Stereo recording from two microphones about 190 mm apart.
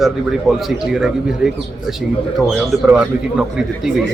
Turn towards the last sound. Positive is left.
turn(degrees=-5)  # may be behind; listen again after turning